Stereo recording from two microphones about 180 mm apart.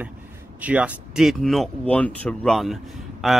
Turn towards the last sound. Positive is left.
turn(degrees=0)  # may be behind; listen again after turning